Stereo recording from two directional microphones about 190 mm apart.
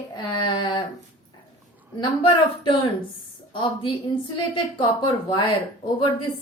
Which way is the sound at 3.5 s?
25° left (ahead or behind).